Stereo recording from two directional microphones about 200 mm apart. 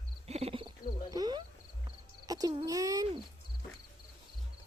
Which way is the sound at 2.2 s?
20° right (ahead or behind).